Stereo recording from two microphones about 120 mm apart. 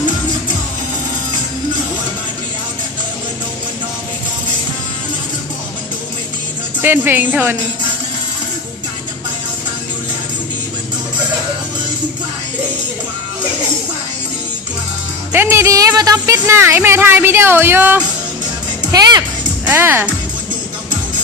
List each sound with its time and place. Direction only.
6.8 s speech: 15° right (ahead or behind)
15.3 s speech: 20° right (ahead or behind)
18.9 s music: 35° right (ahead or behind)
19.6 s speech: 15° right (ahead or behind)